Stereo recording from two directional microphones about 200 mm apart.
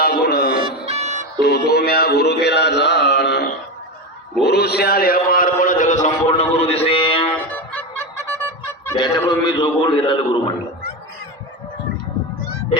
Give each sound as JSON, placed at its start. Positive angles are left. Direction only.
{"t": 0.0, "sound": "music", "side_deg": 50}
{"t": 0.6, "sound": "music", "side_deg": -30}
{"t": 1.4, "sound": "music", "side_deg": 55}
{"t": 4.4, "sound": "a man's voice", "side_deg": 55}
{"t": 7.3, "sound": "music", "side_deg": 10}